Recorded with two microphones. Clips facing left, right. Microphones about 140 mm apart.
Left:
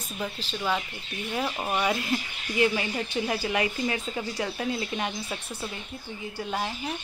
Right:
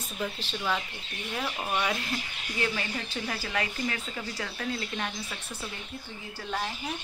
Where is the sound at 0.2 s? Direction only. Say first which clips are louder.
Left 1 dB; 5° left (ahead or behind).